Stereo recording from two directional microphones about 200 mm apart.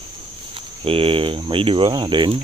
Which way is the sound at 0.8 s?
25° right (ahead or behind).